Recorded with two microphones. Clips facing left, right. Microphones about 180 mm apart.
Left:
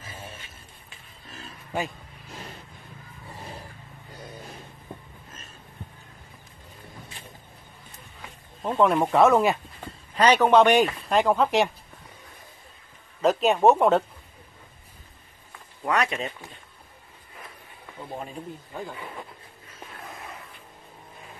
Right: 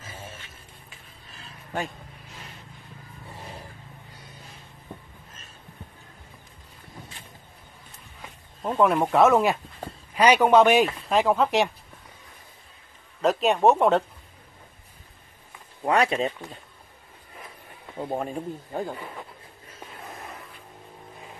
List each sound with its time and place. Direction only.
8.6 s speech: centre (ahead or behind)
13.2 s speech: centre (ahead or behind)
15.8 s speech: 30° right (ahead or behind)
17.9 s speech: 50° right (ahead or behind)